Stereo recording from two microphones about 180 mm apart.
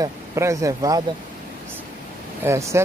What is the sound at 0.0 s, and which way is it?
Speech, 15° right (ahead or behind).